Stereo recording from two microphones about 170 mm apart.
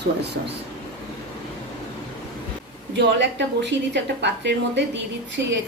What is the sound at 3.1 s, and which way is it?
A woman's voice, 90° right.